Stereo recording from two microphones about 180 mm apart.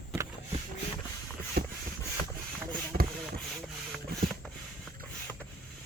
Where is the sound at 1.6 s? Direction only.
60° right (ahead or behind).